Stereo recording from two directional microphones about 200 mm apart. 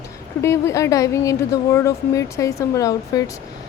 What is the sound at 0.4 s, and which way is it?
Speech, 15° left (ahead or behind).